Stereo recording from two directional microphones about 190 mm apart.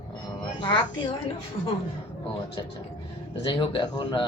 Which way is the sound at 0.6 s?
25° left (ahead or behind).